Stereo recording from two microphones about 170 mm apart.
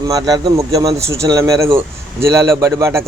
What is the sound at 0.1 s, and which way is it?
A man's voice, 25° right (ahead or behind).